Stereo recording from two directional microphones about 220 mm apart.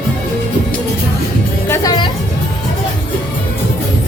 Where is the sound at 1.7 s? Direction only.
15° left (ahead or behind).